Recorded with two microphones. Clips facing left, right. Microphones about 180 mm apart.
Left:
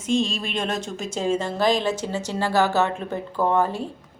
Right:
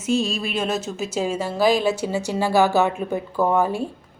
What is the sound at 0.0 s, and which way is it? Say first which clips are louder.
A woman's voice: right 1 dB; 10° right (ahead or behind).